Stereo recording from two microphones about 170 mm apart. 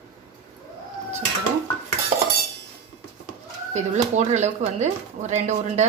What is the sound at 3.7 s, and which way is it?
A woman's voice, 45° right (ahead or behind).